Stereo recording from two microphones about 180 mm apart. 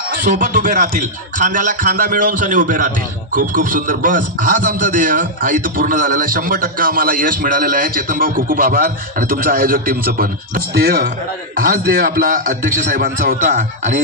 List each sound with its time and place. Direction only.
0.3 s a man's voice: 45° right (ahead or behind)